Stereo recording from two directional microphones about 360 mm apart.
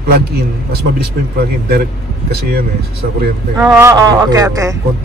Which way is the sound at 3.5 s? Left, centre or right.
Centre.